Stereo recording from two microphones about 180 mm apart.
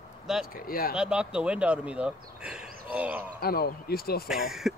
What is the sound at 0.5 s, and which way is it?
Speech, 55° left (ahead or behind).